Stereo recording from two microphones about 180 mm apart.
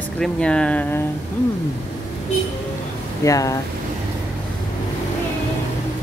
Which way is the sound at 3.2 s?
20° left (ahead or behind).